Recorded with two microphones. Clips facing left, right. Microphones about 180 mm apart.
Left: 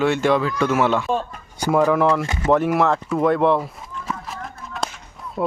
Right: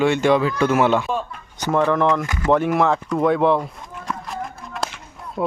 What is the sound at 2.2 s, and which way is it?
Speech, 25° left (ahead or behind).